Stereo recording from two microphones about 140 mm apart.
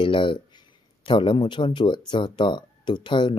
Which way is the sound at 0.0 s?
35° left (ahead or behind).